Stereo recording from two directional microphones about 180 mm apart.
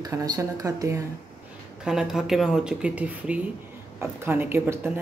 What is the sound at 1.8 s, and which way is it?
Speech, 5° right (ahead or behind).